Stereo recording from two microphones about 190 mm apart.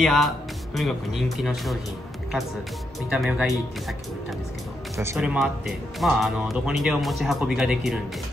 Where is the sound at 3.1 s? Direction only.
5° right (ahead or behind).